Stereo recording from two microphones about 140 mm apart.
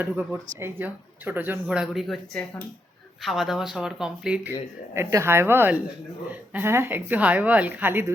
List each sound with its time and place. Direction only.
0.0 s speech: 15° right (ahead or behind)
3.2 s speech: centre (ahead or behind)
4.9 s speech: 20° right (ahead or behind)